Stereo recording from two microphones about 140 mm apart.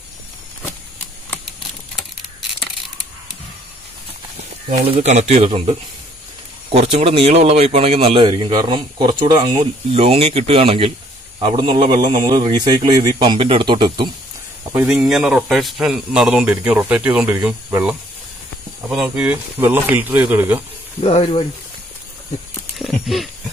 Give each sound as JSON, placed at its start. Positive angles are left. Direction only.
{"t": 4.8, "sound": "speech", "side_deg": -45}
{"t": 9.8, "sound": "speech", "side_deg": -45}
{"t": 14.6, "sound": "a sound", "side_deg": -20}
{"t": 14.9, "sound": "speech", "side_deg": -5}
{"t": 18.9, "sound": "speech", "side_deg": -5}
{"t": 21.0, "sound": "speech", "side_deg": 45}
{"t": 22.8, "sound": "wild animals", "side_deg": 0}